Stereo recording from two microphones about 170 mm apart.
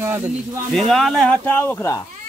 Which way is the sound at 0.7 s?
Centre (ahead or behind).